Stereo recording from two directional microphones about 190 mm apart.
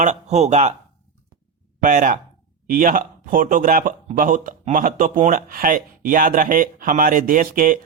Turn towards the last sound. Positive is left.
turn(degrees=-45)  # may be behind; listen again after turning